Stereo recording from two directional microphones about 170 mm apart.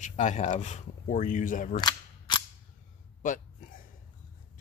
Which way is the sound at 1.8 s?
25° left (ahead or behind).